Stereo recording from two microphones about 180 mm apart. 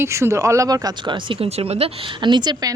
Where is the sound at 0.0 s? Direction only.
15° right (ahead or behind).